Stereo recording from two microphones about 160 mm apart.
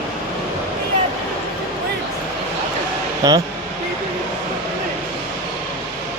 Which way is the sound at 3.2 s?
25° right (ahead or behind).